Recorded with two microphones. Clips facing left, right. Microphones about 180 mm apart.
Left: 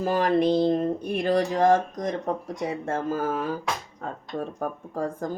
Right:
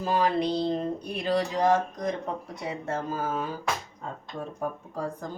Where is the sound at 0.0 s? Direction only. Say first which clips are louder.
Left 4 dB; 50° left (ahead or behind).